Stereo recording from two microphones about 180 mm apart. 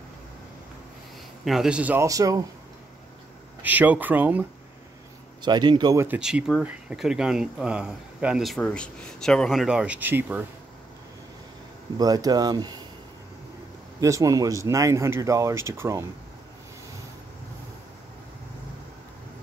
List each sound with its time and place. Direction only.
1.4 s speech: centre (ahead or behind); by 2.4 s 20° right (ahead or behind)
3.6 s speech: 10° right (ahead or behind)
5.4 s speech: 25° right (ahead or behind)
6.0 s speech: 5° right (ahead or behind)
12.0 s speech: 20° right (ahead or behind)
14.0 s speech: 20° right (ahead or behind)